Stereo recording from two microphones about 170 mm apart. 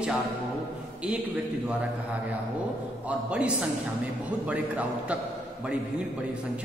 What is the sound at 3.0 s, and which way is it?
A man's voice, 5° right (ahead or behind).